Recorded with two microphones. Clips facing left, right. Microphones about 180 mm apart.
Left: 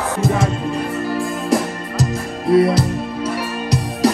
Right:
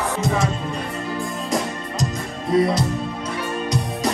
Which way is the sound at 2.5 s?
70° left (ahead or behind).